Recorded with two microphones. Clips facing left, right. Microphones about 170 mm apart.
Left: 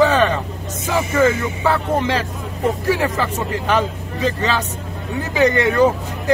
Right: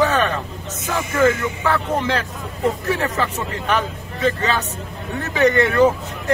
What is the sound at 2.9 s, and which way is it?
Speech, 10° left (ahead or behind).